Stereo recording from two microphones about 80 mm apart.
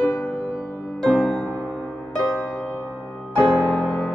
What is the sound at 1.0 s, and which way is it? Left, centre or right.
Music, centre.